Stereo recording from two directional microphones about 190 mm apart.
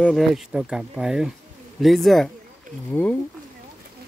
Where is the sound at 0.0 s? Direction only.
Centre (ahead or behind).